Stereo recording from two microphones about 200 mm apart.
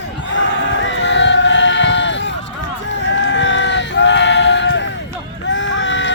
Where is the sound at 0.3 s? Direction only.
65° left (ahead or behind).